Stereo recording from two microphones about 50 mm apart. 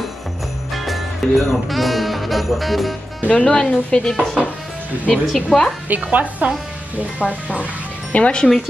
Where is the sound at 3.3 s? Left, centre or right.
Left.